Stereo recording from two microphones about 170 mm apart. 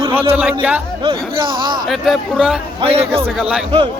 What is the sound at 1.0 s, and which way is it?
Speech, 30° right (ahead or behind).